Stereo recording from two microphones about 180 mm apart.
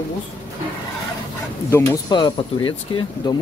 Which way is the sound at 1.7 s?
15° left (ahead or behind).